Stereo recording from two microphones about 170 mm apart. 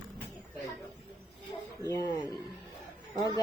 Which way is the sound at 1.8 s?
20° left (ahead or behind).